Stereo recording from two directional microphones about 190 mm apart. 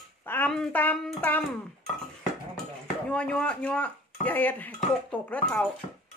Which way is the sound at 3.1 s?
5° left (ahead or behind).